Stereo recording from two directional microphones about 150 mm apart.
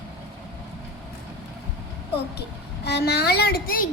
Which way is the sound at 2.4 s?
90° left.